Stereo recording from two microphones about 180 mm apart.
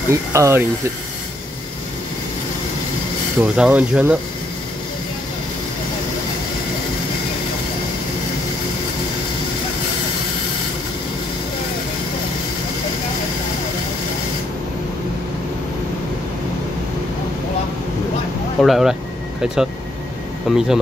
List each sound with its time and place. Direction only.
0.1 s speech: 15° right (ahead or behind)
3.5 s speech: 5° right (ahead or behind)
18.6 s speech: centre (ahead or behind)